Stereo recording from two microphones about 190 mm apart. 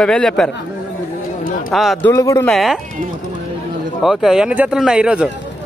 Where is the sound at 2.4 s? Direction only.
Centre (ahead or behind).